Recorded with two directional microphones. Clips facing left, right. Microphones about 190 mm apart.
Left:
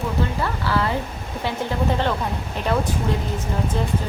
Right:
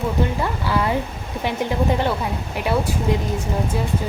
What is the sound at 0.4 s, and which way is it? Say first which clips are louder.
Music: right 1 dB; 15° right (ahead or behind).